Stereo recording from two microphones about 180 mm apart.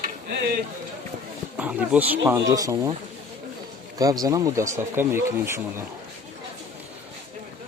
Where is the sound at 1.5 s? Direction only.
10° right (ahead or behind).